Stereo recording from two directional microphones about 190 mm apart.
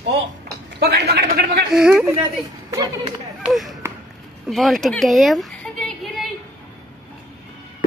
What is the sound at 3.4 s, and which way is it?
Chop, centre (ahead or behind).